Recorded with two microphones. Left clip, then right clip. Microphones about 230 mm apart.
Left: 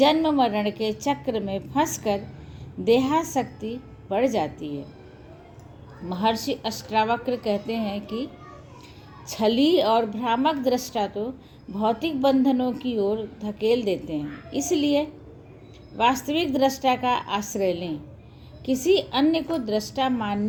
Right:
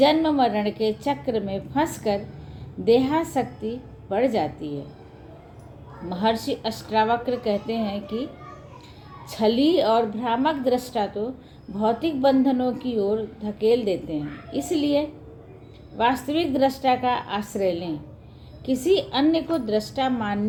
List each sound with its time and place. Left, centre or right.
0.0 s a woman's voice: left
6.1 s a woman's voice: left
9.3 s a woman's voice: left
16.2 s a woman's voice: left
19.6 s a woman's voice: left
20.0 s a woman's voice: left